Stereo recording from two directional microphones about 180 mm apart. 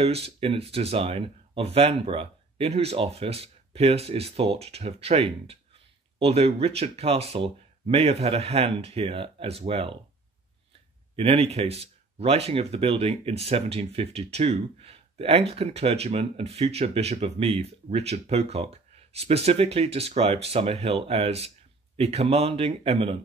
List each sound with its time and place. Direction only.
0.0 s speech: 35° right (ahead or behind)
11.1 s speech: 35° right (ahead or behind)